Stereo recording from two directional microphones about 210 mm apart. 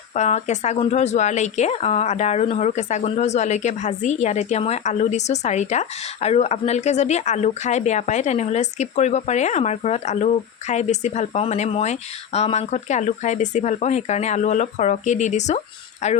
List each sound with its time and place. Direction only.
0.1 s speech: 30° left (ahead or behind)